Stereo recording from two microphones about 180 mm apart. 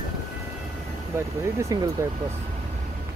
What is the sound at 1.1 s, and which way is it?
Speech, 15° right (ahead or behind).